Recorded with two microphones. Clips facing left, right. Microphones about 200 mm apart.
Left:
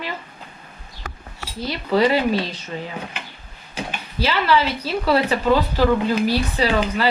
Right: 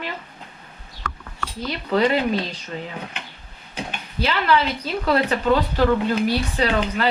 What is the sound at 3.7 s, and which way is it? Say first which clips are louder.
Speech: left 1 dB; 5° left (ahead or behind).